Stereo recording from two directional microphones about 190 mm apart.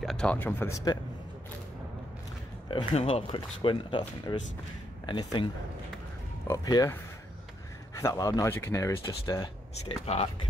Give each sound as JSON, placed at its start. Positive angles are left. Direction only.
{"t": 0.0, "sound": "speech", "side_deg": 5}
{"t": 2.7, "sound": "speech", "side_deg": 30}
{"t": 5.0, "sound": "speech", "side_deg": 25}
{"t": 9.8, "sound": "speech", "side_deg": 30}